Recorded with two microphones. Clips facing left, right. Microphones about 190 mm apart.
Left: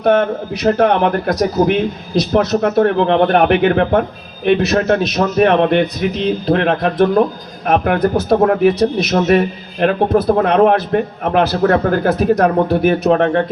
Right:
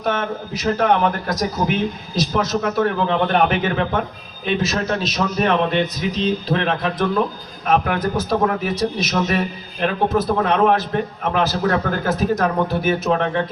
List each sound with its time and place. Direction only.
0.0 s a man's voice: 60° left (ahead or behind)